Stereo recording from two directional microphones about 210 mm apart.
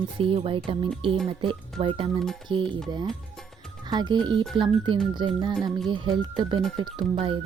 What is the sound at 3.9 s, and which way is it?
Speech, 20° right (ahead or behind).